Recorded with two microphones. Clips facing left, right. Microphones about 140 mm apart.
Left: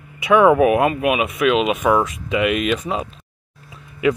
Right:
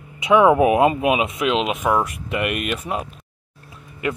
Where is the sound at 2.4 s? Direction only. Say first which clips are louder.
Left 6 dB; 5° right (ahead or behind).